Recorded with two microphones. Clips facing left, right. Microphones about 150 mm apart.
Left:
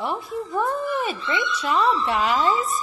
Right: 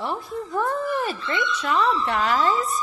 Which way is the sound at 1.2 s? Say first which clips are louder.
Even; 20° left (ahead or behind).